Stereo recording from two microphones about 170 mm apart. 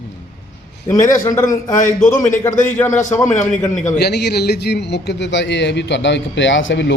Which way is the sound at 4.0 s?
75° left (ahead or behind).